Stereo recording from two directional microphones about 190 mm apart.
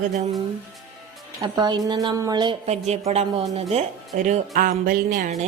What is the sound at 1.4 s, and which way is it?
A woman's voice, 25° right (ahead or behind).